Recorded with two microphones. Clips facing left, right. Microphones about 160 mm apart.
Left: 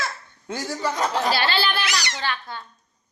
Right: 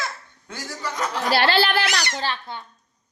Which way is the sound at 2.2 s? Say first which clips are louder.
Right 1 dB; 30° right (ahead or behind).